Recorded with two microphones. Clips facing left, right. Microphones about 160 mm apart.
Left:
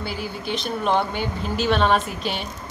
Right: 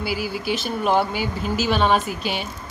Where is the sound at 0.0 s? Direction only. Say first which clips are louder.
Right 4 dB; 5° right (ahead or behind).